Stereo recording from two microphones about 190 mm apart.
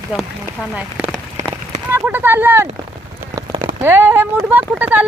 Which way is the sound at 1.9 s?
10° right (ahead or behind).